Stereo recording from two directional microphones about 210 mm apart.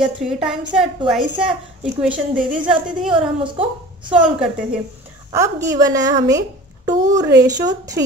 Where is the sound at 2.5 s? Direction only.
5° right (ahead or behind).